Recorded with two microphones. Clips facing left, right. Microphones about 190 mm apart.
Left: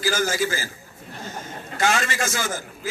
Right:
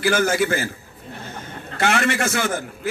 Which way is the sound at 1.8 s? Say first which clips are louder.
Right 3 dB; 60° right (ahead or behind).